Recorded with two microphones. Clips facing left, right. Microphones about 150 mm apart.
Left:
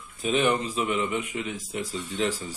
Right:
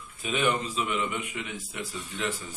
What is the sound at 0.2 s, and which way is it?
A man's voice, 40° left (ahead or behind).